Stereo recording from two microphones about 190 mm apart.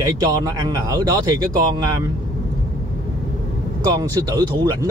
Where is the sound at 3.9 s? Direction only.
20° right (ahead or behind).